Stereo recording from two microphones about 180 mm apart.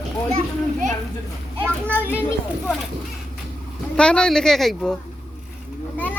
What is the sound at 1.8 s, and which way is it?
Speech, 10° left (ahead or behind).